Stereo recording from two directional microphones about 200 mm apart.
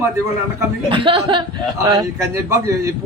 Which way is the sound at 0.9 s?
25° right (ahead or behind).